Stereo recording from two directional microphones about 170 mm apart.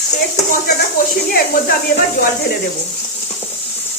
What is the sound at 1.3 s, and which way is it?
Speech, 60° left (ahead or behind).